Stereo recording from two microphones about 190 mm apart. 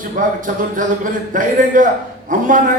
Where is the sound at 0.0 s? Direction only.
45° right (ahead or behind).